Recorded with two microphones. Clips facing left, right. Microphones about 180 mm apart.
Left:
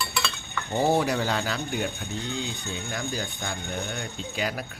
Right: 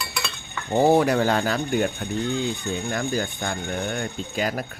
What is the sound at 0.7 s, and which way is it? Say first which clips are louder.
Speech: right 6 dB; 55° right (ahead or behind).